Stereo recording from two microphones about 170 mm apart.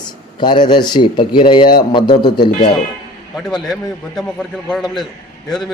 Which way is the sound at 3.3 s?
Centre (ahead or behind).